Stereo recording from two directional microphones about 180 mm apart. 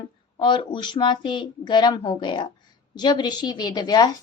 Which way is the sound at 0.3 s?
25° left (ahead or behind).